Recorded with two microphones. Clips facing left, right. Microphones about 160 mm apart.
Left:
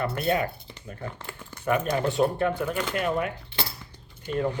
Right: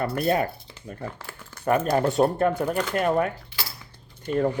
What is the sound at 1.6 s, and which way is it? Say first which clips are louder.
Speech: right 3 dB; 40° right (ahead or behind).